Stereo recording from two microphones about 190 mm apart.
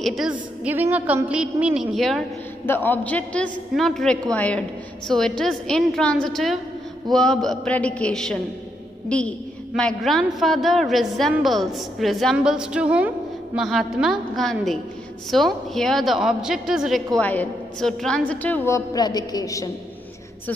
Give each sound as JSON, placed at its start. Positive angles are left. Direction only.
{"t": 0.0, "sound": "a man's voice", "side_deg": 0}
{"t": 18.9, "sound": "a woman's voice", "side_deg": 20}